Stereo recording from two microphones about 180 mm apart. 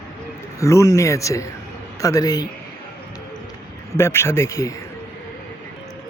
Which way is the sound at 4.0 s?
15° left (ahead or behind).